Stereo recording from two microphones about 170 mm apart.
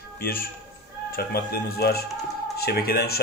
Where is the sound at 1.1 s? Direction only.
65° left (ahead or behind).